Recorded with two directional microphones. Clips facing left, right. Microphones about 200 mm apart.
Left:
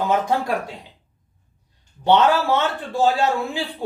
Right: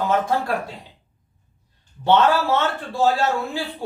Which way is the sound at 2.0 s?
15° left (ahead or behind).